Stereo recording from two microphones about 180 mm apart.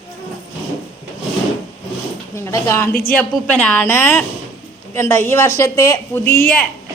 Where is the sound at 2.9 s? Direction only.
55° left (ahead or behind).